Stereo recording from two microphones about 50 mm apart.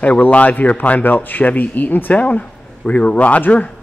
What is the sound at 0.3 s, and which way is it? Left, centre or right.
A man's voice, left.